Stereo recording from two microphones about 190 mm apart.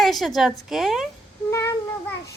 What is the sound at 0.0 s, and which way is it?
A woman's voice, centre (ahead or behind).